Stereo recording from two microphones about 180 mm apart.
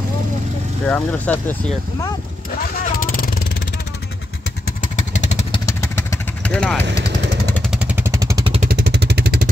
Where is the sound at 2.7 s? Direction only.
50° left (ahead or behind).